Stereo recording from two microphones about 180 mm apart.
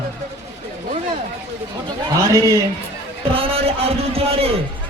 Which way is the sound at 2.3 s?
20° right (ahead or behind).